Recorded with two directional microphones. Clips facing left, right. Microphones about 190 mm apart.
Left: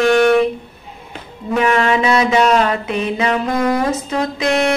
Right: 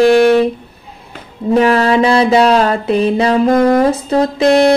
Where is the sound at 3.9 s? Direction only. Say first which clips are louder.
Right 6 dB; 35° right (ahead or behind).